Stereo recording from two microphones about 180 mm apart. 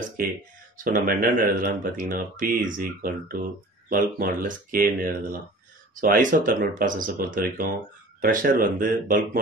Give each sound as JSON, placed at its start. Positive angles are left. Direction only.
{"t": 0.8, "sound": "speech", "side_deg": -50}